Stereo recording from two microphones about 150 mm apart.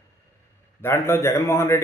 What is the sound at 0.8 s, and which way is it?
Speech, 15° left (ahead or behind).